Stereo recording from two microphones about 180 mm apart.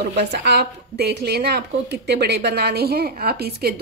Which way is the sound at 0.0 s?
70° right (ahead or behind).